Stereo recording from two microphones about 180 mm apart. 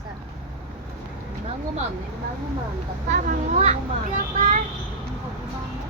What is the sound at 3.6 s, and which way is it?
Speech, 45° right (ahead or behind).